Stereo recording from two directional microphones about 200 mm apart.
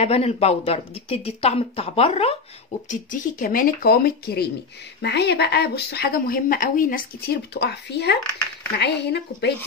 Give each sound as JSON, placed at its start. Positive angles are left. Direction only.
{"t": 0.0, "sound": "speech", "side_deg": 30}
{"t": 2.9, "sound": "speech", "side_deg": 40}